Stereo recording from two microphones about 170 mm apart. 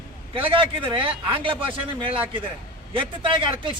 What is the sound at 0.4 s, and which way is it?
A man's voice, 30° right (ahead or behind).